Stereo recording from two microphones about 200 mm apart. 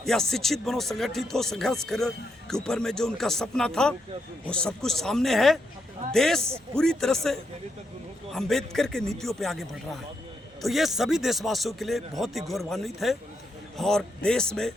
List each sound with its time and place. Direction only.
0.0 s speech: centre (ahead or behind)